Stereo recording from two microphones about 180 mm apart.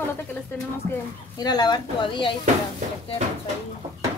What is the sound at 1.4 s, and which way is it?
Speech, 25° left (ahead or behind).